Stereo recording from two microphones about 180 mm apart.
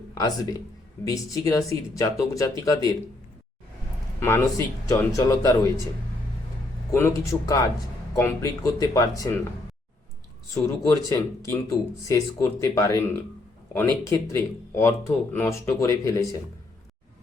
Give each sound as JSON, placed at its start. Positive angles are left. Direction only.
{"t": 0.1, "sound": "speech", "side_deg": 20}
{"t": 4.2, "sound": "speech", "side_deg": 15}
{"t": 6.9, "sound": "speech", "side_deg": 15}
{"t": 10.5, "sound": "speech", "side_deg": 20}